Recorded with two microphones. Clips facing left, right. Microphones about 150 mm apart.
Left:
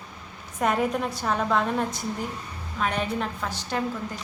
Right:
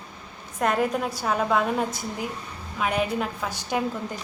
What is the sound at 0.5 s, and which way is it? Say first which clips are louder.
A woman's voice: right 1 dB; centre (ahead or behind).